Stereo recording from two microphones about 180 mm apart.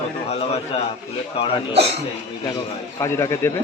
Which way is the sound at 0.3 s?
35° left (ahead or behind).